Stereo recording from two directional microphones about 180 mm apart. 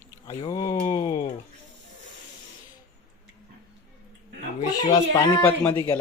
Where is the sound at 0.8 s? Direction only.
30° left (ahead or behind).